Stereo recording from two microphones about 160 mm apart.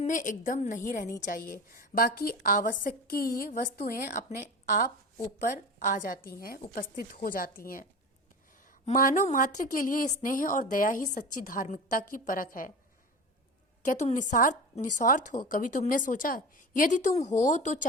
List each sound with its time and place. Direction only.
0.0 s a woman's voice: 55° left (ahead or behind)
5.4 s a woman's voice: 55° left (ahead or behind)
8.9 s a woman's voice: 55° left (ahead or behind)
13.8 s speech: 50° left (ahead or behind)